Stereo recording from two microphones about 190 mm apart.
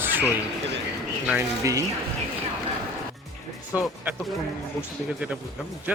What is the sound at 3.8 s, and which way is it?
Speech, centre (ahead or behind).